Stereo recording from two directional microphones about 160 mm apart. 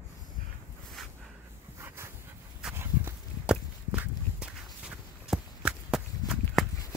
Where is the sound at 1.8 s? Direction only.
15° right (ahead or behind).